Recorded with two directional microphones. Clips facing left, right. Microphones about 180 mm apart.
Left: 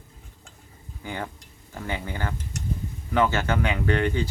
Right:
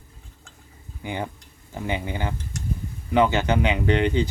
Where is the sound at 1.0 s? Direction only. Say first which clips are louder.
Right 3 dB; 15° right (ahead or behind).